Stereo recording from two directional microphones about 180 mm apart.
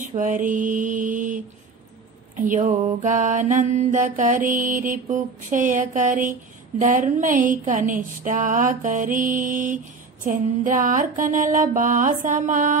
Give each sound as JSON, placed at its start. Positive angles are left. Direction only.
{"t": 0.1, "sound": "mantra", "side_deg": -45}